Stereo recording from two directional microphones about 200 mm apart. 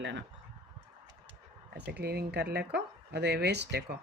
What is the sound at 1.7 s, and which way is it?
Speech, 55° right (ahead or behind).